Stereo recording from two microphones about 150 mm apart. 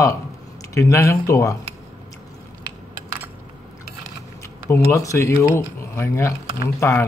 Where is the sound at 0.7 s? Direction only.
20° left (ahead or behind).